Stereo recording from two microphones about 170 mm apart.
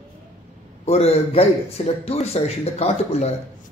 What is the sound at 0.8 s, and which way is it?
A man's voice, 35° left (ahead or behind).